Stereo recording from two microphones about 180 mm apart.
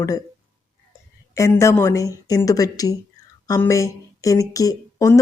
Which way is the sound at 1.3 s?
15° left (ahead or behind).